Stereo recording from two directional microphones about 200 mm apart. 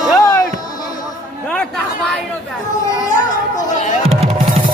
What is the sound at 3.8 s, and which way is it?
Music, 40° left (ahead or behind).